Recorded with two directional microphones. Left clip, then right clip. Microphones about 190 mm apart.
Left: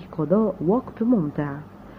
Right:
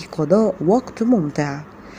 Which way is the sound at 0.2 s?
25° right (ahead or behind).